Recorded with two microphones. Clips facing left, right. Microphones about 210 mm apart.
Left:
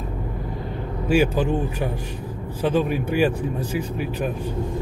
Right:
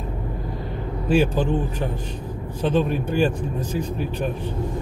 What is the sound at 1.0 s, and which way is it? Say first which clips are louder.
Speech: even; 10° left (ahead or behind).